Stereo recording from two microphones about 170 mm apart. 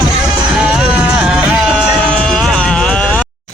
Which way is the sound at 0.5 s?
5° right (ahead or behind).